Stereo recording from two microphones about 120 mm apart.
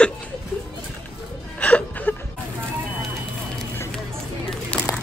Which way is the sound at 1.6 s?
10° left (ahead or behind).